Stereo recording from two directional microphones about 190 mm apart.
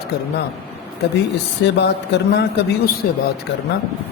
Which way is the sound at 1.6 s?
60° left (ahead or behind).